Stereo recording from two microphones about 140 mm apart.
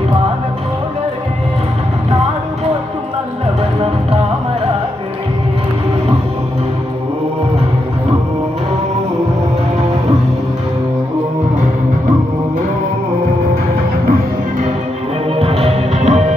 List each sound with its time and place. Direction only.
15.3 s music: 45° right (ahead or behind)